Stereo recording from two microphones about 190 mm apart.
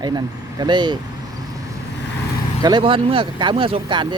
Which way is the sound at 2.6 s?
25° right (ahead or behind).